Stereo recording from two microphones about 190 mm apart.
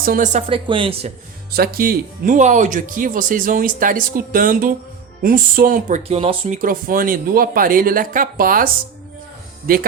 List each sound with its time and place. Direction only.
0.0 s speech: 45° right (ahead or behind)
0.4 s speech: 25° right (ahead or behind)
1.5 s speech: 50° right (ahead or behind)
6.0 s speech: 30° right (ahead or behind); by 9.8 s 50° right (ahead or behind)